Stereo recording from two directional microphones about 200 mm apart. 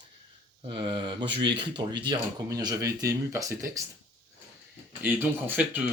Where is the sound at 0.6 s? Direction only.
25° right (ahead or behind).